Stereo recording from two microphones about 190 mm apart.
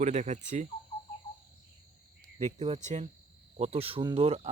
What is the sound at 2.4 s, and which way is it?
Speech, 35° right (ahead or behind).